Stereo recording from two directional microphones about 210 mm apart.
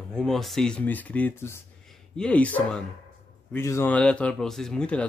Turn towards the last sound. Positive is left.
turn(degrees=5)  # may be behind; listen again after turning